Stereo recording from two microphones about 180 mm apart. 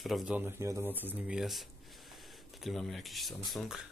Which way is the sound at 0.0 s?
Centre (ahead or behind).